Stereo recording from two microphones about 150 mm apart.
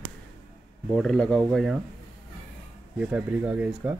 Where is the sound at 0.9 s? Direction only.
5° left (ahead or behind).